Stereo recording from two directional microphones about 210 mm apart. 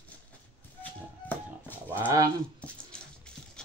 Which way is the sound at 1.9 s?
10° right (ahead or behind).